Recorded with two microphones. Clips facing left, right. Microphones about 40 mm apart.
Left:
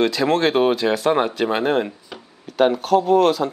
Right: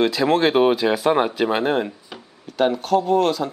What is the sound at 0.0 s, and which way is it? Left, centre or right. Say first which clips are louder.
Speech: even; centre.